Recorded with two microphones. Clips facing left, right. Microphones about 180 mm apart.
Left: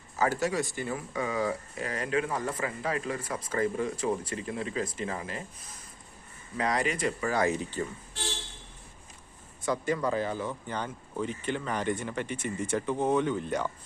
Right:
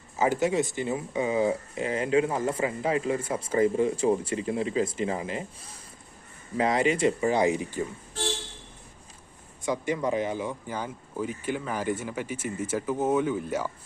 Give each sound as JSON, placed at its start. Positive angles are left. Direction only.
{"t": 0.2, "sound": "speech", "side_deg": -20}
{"t": 9.6, "sound": "speech", "side_deg": -20}